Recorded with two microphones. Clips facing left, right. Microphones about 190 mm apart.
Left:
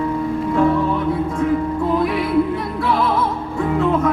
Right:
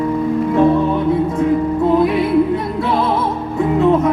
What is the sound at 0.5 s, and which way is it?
Music, 25° right (ahead or behind).